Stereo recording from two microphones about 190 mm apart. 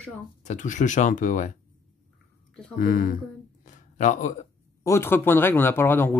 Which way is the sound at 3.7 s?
40° left (ahead or behind).